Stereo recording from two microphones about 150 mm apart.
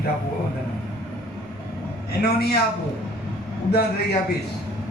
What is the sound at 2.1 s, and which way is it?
Speech, 90° left.